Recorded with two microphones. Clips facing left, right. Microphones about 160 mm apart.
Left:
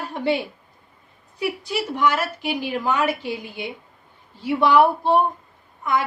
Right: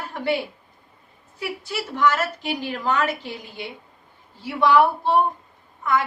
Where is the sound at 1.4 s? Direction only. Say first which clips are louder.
Left 4 dB; 15° left (ahead or behind).